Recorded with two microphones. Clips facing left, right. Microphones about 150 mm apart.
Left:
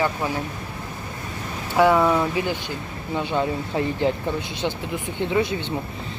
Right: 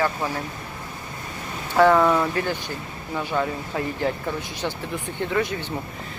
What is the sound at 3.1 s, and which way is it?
Speech, 20° left (ahead or behind).